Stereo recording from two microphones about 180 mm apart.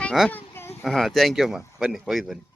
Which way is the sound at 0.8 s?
Centre (ahead or behind).